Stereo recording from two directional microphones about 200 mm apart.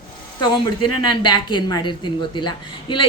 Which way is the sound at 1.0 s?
25° left (ahead or behind).